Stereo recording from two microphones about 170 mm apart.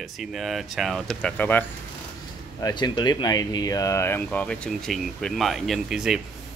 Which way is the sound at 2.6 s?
25° left (ahead or behind).